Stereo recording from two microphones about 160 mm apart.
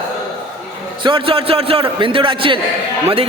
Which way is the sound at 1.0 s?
30° right (ahead or behind).